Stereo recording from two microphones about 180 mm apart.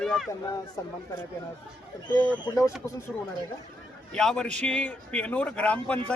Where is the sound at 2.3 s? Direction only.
20° left (ahead or behind).